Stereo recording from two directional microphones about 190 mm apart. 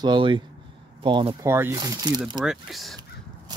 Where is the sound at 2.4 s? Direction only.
Centre (ahead or behind).